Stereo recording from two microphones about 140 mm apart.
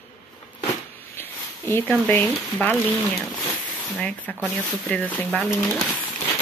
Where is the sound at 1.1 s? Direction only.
15° left (ahead or behind).